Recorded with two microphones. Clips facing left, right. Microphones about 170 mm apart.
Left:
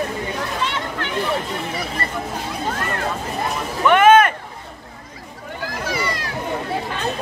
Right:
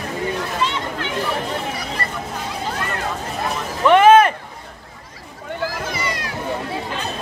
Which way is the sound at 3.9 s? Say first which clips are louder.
Right 2 dB; 30° right (ahead or behind).